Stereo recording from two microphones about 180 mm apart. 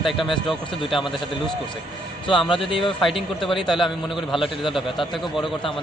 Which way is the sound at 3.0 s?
Centre (ahead or behind).